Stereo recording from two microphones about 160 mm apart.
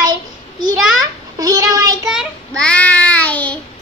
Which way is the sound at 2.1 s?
Centre (ahead or behind).